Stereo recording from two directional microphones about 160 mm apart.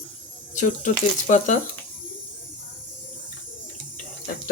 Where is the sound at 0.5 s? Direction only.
50° left (ahead or behind).